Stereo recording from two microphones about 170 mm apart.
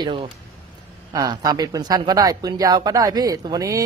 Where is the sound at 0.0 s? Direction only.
30° right (ahead or behind).